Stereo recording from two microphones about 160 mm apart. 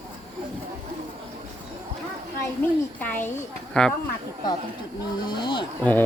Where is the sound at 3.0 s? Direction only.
10° left (ahead or behind).